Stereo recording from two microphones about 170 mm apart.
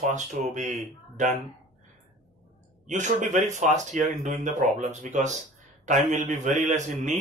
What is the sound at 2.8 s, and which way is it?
Speech, 45° right (ahead or behind).